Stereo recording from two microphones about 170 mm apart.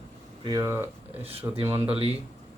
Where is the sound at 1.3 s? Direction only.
35° right (ahead or behind).